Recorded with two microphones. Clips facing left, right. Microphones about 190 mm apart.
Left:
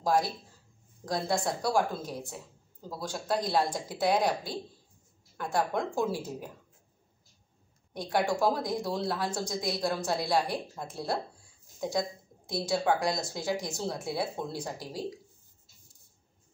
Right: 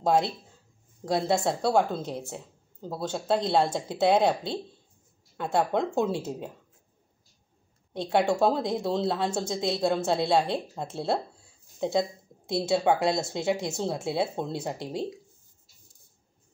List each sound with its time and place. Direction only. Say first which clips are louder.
0.0 s speech: right 3 dB; 25° right (ahead or behind)
7.9 s speech: right 4 dB; 25° right (ahead or behind)